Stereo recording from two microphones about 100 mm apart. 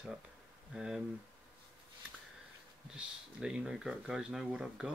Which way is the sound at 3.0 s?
10° right (ahead or behind).